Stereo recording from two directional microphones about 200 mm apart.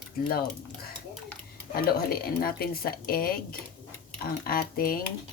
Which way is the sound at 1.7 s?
50° left (ahead or behind).